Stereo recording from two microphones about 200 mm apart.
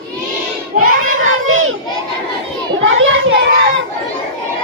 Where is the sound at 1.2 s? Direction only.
90° right.